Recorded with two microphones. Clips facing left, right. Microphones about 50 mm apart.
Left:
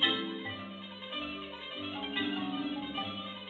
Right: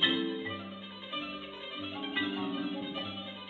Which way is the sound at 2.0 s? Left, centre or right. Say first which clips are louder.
Right 1 dB; centre.